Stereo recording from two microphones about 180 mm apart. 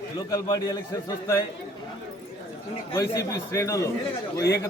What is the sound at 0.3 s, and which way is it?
Speech, 20° left (ahead or behind).